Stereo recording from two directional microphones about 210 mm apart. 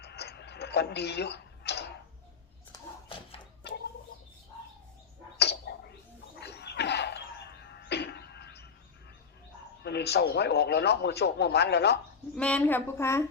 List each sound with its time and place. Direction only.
0.0 s tick-tock: 50° left (ahead or behind)
5.4 s a sound: 50° left (ahead or behind)
9.8 s a man's voice: 50° left (ahead or behind)
12.4 s a woman's voice: 5° left (ahead or behind)